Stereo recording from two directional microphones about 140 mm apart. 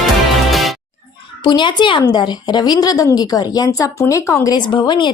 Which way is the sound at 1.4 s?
35° left (ahead or behind).